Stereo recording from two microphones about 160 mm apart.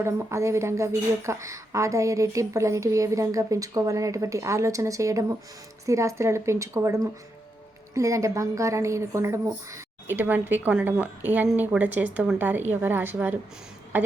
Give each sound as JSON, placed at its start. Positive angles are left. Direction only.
{"t": 0.0, "sound": "a woman's voice", "side_deg": -20}